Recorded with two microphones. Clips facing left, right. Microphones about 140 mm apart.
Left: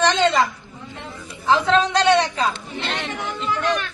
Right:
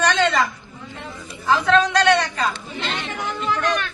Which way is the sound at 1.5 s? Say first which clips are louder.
Even; 25° left (ahead or behind).